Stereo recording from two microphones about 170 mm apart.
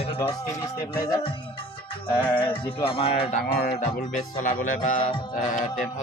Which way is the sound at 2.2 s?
10° left (ahead or behind).